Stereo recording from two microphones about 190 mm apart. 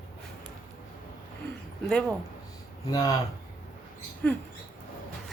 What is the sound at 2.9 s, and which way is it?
Speech, 20° left (ahead or behind).